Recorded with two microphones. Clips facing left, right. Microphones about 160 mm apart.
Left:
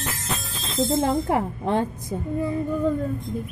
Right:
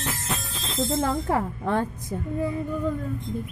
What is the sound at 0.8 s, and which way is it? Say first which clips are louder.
Speech: left 3 dB; 25° left (ahead or behind).